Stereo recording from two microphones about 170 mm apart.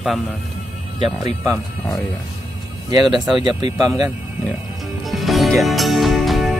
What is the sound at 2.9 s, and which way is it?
Speech, 25° right (ahead or behind).